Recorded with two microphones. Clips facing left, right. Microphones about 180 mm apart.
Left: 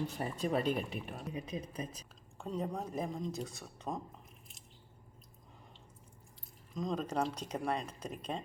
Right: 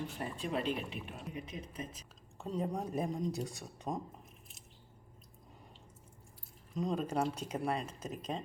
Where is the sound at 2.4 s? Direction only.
10° right (ahead or behind).